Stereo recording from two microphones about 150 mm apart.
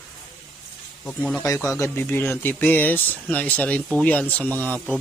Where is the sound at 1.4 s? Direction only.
20° left (ahead or behind).